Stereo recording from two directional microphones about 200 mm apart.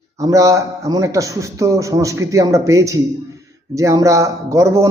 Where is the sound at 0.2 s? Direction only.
15° right (ahead or behind).